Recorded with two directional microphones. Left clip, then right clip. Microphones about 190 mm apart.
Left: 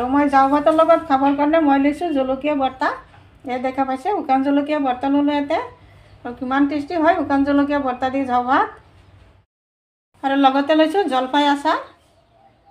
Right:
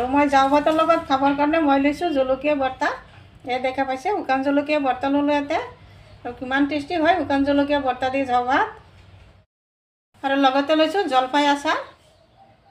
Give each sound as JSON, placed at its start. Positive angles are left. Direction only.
{"t": 0.1, "sound": "a woman's voice", "side_deg": 10}
{"t": 10.2, "sound": "a woman's voice", "side_deg": 10}